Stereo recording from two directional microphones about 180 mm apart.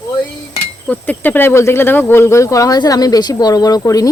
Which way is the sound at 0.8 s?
10° left (ahead or behind).